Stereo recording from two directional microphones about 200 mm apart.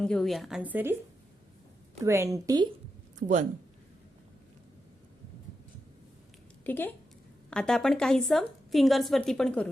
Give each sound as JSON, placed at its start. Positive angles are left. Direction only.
{"t": 0.0, "sound": "a woman's voice", "side_deg": 5}
{"t": 2.0, "sound": "a woman's voice", "side_deg": -15}
{"t": 3.2, "sound": "speech", "side_deg": -40}
{"t": 6.7, "sound": "a woman's voice", "side_deg": 10}